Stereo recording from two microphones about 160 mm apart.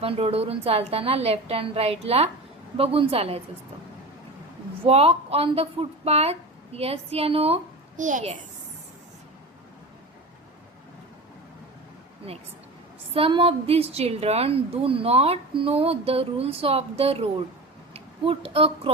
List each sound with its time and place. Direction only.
0.0 s a woman's voice: 40° right (ahead or behind)
4.8 s a woman's voice: 40° right (ahead or behind)
13.1 s a woman's voice: 35° right (ahead or behind)